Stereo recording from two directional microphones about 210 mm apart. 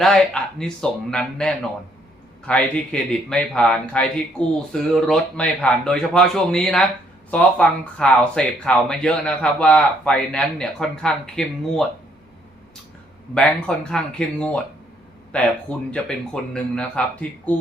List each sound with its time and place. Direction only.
0.6 s speech: 5° left (ahead or behind)
13.3 s speech: 5° left (ahead or behind)